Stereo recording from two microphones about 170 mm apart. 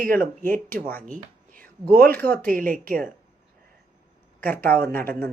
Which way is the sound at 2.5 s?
55° right (ahead or behind).